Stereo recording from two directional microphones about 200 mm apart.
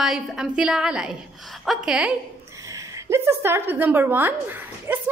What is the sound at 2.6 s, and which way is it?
A woman's voice, 15° right (ahead or behind).